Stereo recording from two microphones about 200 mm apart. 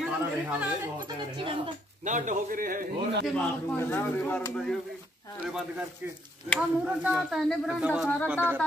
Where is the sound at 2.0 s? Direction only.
40° right (ahead or behind).